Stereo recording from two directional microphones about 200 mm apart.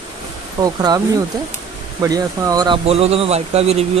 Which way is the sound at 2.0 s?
20° right (ahead or behind).